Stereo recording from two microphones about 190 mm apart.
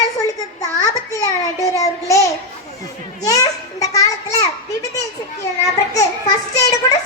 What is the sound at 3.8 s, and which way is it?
Children playing, 15° left (ahead or behind).